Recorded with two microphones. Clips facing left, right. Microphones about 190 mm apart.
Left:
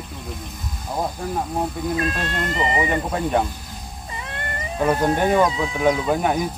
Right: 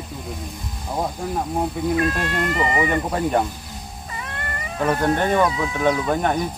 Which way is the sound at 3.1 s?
Centre (ahead or behind).